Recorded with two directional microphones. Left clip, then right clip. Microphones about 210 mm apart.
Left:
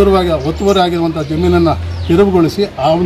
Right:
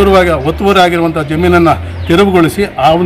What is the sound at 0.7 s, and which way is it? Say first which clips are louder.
A man's voice: right 4 dB; 5° right (ahead or behind).